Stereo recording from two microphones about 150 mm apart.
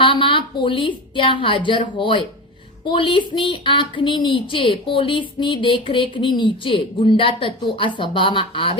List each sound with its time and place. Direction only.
0.0 s a woman's voice: 35° left (ahead or behind)